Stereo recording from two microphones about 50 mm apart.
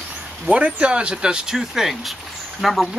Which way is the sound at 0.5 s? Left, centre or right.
Right.